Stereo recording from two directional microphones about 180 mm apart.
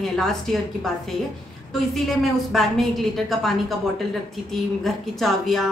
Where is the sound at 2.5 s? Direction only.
Centre (ahead or behind).